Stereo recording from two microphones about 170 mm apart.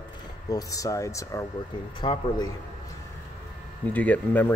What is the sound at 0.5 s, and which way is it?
Speech, 20° left (ahead or behind).